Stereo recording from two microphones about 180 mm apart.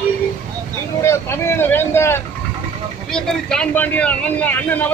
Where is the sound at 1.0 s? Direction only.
15° left (ahead or behind).